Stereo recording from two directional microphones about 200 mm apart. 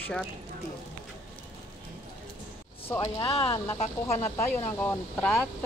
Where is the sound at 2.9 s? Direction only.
15° left (ahead or behind).